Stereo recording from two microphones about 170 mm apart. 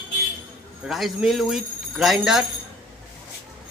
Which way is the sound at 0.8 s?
5° right (ahead or behind).